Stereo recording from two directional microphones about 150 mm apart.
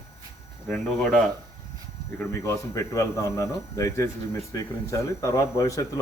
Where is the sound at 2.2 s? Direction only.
15° left (ahead or behind).